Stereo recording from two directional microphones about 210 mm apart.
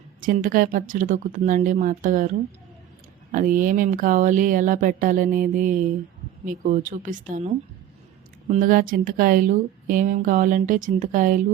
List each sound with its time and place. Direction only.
0.2 s speech: 40° right (ahead or behind)
3.3 s speech: 40° right (ahead or behind)